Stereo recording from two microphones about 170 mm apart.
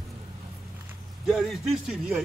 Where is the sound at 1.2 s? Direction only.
Centre (ahead or behind).